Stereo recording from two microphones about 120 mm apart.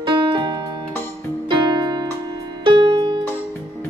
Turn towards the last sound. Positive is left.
turn(degrees=-40)  # may be behind; listen again after turning